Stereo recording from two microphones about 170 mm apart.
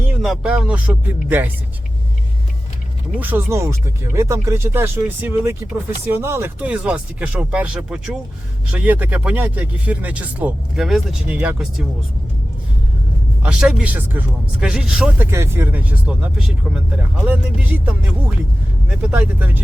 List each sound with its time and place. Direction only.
0.2 s speech: 5° right (ahead or behind)
3.2 s speech: 10° right (ahead or behind)
13.4 s speech: 5° right (ahead or behind)